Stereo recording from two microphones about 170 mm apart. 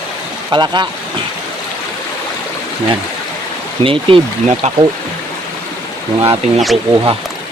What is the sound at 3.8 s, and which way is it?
Speech, 30° right (ahead or behind).